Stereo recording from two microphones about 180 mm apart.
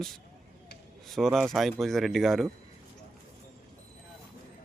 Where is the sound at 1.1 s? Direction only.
Centre (ahead or behind).